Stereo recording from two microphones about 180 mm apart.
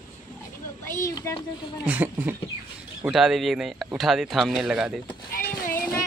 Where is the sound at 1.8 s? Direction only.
10° right (ahead or behind).